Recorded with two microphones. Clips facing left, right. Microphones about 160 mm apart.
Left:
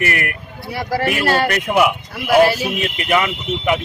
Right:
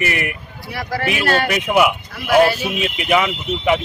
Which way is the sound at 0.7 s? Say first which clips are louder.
Left 3 dB; 30° left (ahead or behind).